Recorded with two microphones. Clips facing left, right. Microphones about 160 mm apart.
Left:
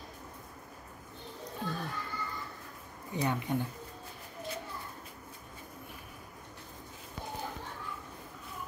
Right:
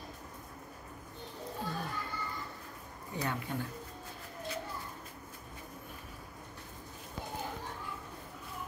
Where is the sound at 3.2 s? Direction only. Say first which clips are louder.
Left 4 dB; 20° left (ahead or behind).